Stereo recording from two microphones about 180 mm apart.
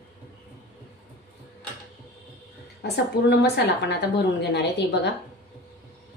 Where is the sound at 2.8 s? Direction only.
65° left (ahead or behind).